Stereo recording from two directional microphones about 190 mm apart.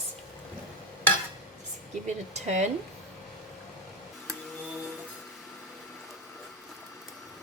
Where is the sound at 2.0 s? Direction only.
40° right (ahead or behind).